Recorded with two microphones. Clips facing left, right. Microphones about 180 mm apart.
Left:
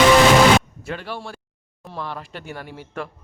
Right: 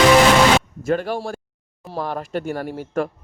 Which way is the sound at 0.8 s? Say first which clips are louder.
Right 9 dB; 45° right (ahead or behind).